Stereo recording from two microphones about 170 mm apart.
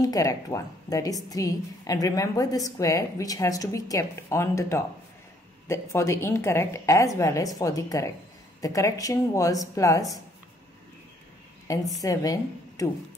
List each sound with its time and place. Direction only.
0.0 s a woman's voice: 20° left (ahead or behind)
12.0 s a woman's voice: 20° left (ahead or behind)